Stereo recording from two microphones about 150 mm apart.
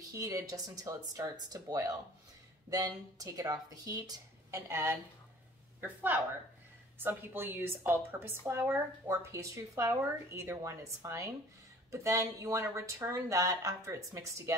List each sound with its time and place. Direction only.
0.1 s speech: 20° right (ahead or behind)
7.0 s a woman's voice: 15° right (ahead or behind)